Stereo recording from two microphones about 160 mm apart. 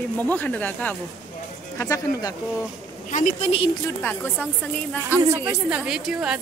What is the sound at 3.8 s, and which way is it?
Speech, 15° left (ahead or behind).